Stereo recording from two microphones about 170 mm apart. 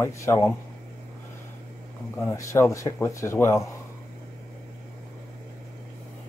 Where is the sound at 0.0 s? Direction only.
15° left (ahead or behind).